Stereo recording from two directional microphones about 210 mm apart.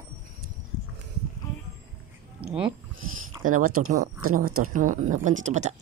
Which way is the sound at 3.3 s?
15° right (ahead or behind).